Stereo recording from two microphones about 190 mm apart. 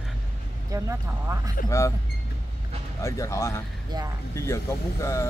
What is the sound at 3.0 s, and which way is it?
A man's voice, 15° left (ahead or behind).